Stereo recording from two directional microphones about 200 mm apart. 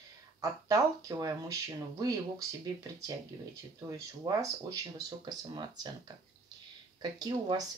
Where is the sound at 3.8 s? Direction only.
15° right (ahead or behind).